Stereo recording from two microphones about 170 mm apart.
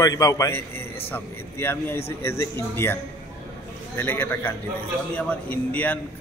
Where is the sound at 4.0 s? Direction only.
10° left (ahead or behind).